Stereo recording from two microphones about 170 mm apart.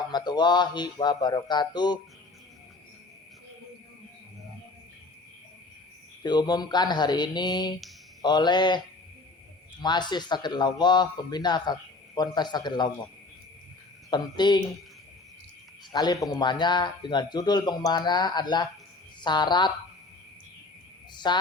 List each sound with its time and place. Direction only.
0.1 s a man's voice: 25° left (ahead or behind)
6.2 s a man's voice: 25° left (ahead or behind)
9.8 s a man's voice: 25° left (ahead or behind)
14.1 s a man's voice: 25° left (ahead or behind)
15.9 s a man's voice: 25° left (ahead or behind)
21.2 s a man's voice: 25° left (ahead or behind)